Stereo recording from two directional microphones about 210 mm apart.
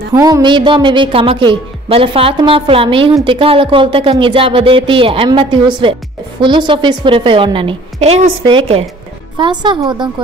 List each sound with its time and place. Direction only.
0.1 s a woman's voice: 15° right (ahead or behind)